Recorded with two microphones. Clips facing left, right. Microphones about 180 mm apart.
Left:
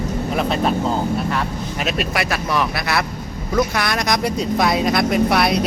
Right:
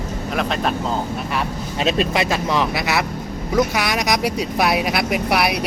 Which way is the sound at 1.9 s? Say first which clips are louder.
Right 4 dB; 25° right (ahead or behind).